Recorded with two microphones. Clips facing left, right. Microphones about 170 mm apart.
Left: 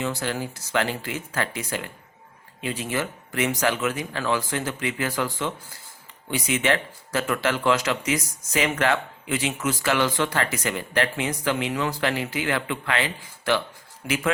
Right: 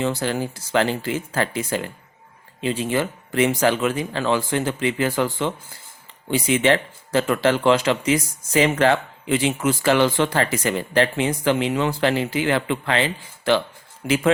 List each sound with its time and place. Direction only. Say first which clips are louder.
0.2 s speech: right 4 dB; 30° right (ahead or behind)